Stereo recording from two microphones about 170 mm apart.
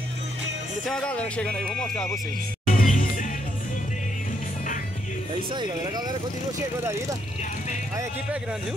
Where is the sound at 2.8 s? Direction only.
50° left (ahead or behind).